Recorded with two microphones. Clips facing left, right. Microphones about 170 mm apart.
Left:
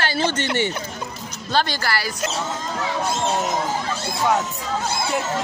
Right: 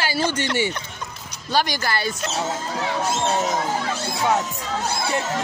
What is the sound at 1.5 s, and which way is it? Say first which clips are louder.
Speech: even; 15° right (ahead or behind).